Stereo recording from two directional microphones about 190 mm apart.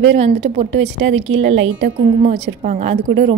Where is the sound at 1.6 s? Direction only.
85° right.